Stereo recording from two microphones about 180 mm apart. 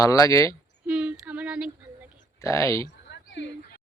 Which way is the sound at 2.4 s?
15° left (ahead or behind).